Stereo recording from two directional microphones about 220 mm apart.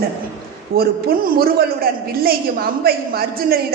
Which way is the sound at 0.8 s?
45° right (ahead or behind).